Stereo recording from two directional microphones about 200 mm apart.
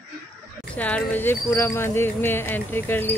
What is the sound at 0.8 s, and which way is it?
Speech, 5° left (ahead or behind).